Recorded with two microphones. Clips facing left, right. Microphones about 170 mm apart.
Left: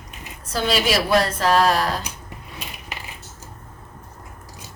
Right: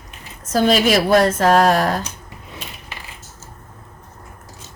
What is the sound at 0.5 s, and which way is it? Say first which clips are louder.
A woman's voice: right 6 dB; 45° right (ahead or behind).